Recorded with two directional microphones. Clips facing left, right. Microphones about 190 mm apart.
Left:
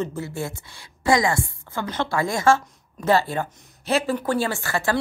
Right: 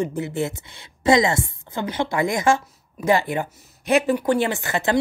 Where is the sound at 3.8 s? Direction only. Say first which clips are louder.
Right 4 dB; 15° right (ahead or behind).